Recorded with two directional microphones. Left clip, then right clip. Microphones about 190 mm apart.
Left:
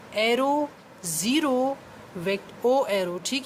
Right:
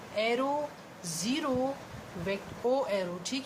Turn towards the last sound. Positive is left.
turn(degrees=50)  # may be behind; listen again after turning